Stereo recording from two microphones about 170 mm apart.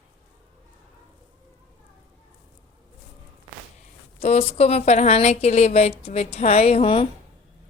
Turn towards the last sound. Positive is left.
turn(degrees=30)  # may be behind; listen again after turning